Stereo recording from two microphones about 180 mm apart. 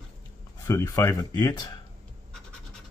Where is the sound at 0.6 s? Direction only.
15° left (ahead or behind).